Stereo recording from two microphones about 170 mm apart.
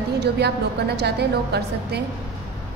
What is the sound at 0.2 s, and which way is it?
A woman's voice, 75° right (ahead or behind).